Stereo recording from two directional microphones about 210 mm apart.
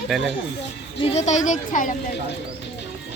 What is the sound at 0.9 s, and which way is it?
A woman's voice, 30° left (ahead or behind).